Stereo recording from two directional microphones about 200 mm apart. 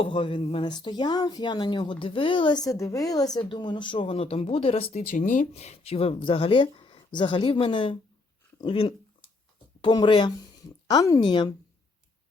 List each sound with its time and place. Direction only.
0.0 s speech: 25° left (ahead or behind)